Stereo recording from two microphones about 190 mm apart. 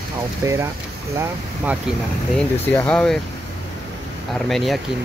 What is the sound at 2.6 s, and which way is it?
Speech, 10° left (ahead or behind).